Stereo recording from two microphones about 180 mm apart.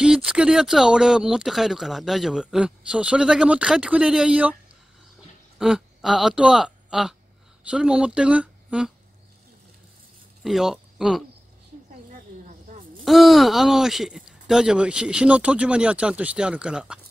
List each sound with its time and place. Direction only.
0.0 s speech: 5° right (ahead or behind)
5.6 s speech: 5° right (ahead or behind)
10.4 s speech: centre (ahead or behind)
12.4 s snake: 45° right (ahead or behind)
13.0 s speech: centre (ahead or behind)